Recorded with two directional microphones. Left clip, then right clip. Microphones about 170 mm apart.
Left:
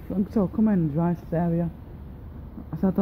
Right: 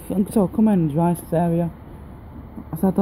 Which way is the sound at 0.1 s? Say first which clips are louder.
Right 5 dB; 10° right (ahead or behind).